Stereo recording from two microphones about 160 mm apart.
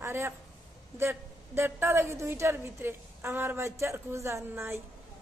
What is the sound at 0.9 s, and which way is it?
A man's voice, 15° right (ahead or behind).